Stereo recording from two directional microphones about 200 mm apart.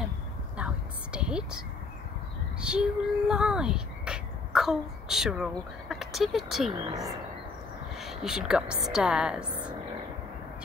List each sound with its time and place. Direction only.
1.1 s speech: 5° right (ahead or behind)
2.6 s speech: 5° right (ahead or behind)
6.9 s speech: 15° right (ahead or behind)
8.0 s a woman's voice: centre (ahead or behind)